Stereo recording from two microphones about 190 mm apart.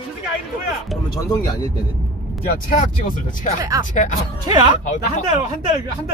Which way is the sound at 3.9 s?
40° left (ahead or behind).